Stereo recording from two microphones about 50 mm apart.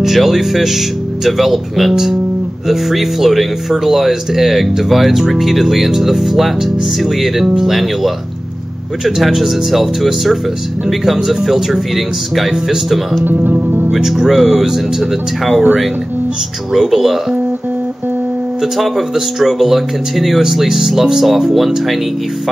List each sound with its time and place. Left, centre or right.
0.0 s speech: centre
13.2 s speech: right
13.9 s speech: centre
16.7 s speech: centre
18.6 s speech: centre